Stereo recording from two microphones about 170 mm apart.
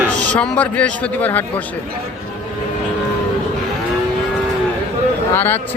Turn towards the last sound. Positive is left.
turn(degrees=10)  # may be behind; listen again after turning